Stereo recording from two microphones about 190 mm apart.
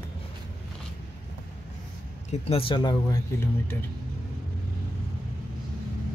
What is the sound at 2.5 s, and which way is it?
Speech, 25° left (ahead or behind).